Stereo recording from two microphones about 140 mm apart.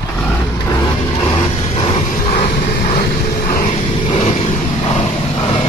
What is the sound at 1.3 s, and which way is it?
Vehicle, 40° left (ahead or behind).